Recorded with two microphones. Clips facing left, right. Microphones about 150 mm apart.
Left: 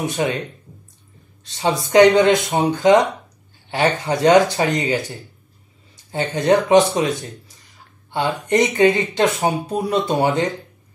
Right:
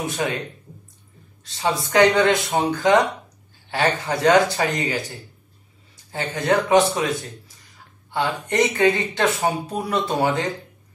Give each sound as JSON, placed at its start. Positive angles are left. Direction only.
{"t": 0.2, "sound": "speech", "side_deg": 25}
{"t": 1.4, "sound": "speech", "side_deg": 20}
{"t": 8.1, "sound": "speech", "side_deg": 20}